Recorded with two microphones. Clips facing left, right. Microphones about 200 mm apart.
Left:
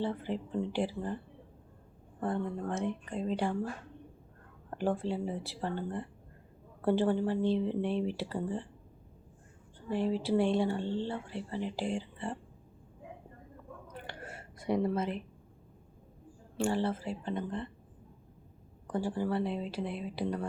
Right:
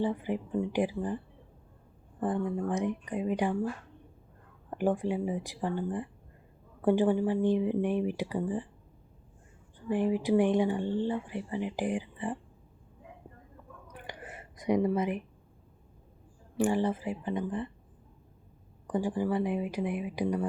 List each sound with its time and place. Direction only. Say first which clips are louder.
0.0 s speech: right 3 dB; 15° right (ahead or behind)
2.2 s speech: right 3 dB; 15° right (ahead or behind)
4.7 s speech: right 3 dB; 15° right (ahead or behind)
9.7 s speech: right 3 dB; 15° right (ahead or behind)
13.8 s a sound: right 1 dB; 15° right (ahead or behind)
16.6 s speech: right 3 dB; 15° right (ahead or behind)
18.9 s speech: right 3 dB; 15° right (ahead or behind)